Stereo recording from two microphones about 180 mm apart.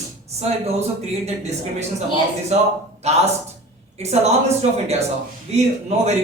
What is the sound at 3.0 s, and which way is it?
Speech, 35° right (ahead or behind).